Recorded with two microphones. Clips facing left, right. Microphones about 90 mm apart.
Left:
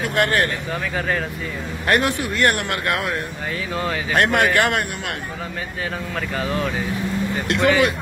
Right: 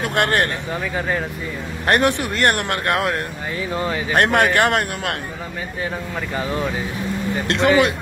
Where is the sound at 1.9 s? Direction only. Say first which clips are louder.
Right 2 dB; 25° right (ahead or behind).